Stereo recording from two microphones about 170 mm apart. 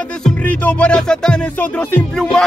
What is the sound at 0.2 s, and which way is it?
Music, 10° left (ahead or behind).